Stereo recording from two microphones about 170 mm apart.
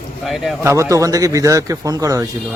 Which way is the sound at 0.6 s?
15° right (ahead or behind).